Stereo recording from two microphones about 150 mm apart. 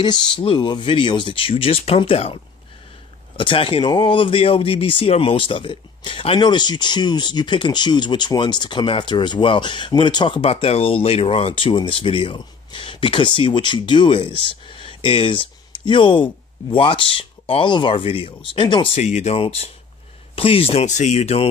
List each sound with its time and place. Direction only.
0.3 s speech: 30° left (ahead or behind)
18.9 s speech: 50° left (ahead or behind)